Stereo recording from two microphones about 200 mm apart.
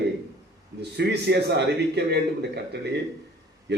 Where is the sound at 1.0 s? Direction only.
55° right (ahead or behind).